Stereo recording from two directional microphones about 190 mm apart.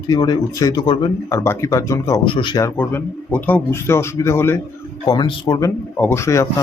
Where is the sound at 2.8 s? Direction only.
10° left (ahead or behind).